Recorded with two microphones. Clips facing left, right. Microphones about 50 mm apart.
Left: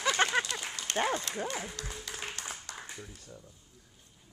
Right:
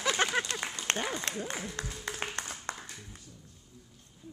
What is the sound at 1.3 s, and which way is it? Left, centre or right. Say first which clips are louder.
Speech: left 1 dB; right.